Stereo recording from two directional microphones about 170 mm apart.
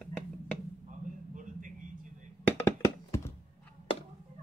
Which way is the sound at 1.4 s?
50° right (ahead or behind).